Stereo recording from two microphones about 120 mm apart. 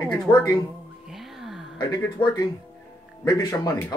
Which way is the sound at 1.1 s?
Centre (ahead or behind).